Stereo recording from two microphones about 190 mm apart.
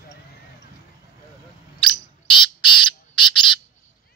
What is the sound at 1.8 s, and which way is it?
Bird, 25° left (ahead or behind).